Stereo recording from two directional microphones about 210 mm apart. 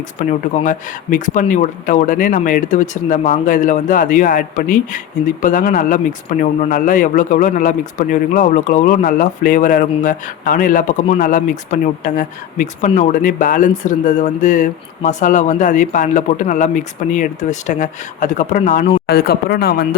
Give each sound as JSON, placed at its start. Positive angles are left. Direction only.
{"t": 0.2, "sound": "speech", "side_deg": 35}
{"t": 19.0, "sound": "speech", "side_deg": 50}